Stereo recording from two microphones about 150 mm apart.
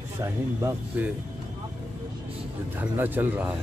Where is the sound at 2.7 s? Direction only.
10° right (ahead or behind).